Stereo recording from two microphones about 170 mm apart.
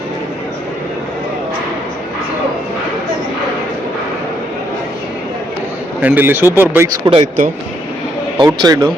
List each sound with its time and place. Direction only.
6.0 s speech: 10° right (ahead or behind)
7.1 s speech: 35° right (ahead or behind)
8.4 s a man's voice: 20° right (ahead or behind)